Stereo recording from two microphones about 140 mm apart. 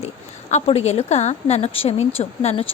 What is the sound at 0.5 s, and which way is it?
A woman's voice, 50° left (ahead or behind).